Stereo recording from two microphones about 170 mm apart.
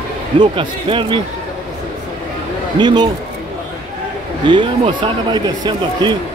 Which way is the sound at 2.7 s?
25° right (ahead or behind).